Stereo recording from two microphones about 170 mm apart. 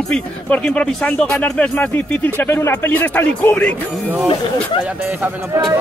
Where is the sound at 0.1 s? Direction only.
5° left (ahead or behind).